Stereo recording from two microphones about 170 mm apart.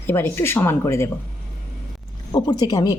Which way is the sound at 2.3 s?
25° left (ahead or behind).